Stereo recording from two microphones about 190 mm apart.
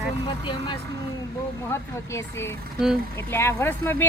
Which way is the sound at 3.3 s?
10° left (ahead or behind).